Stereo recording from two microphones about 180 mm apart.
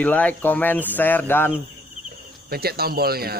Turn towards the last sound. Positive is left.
turn(degrees=-60)  # may be behind; listen again after turning